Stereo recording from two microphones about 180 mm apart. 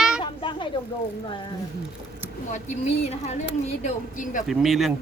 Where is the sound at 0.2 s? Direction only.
25° left (ahead or behind).